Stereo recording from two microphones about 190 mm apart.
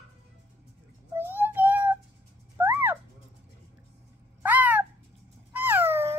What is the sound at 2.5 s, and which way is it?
Owl, 10° right (ahead or behind).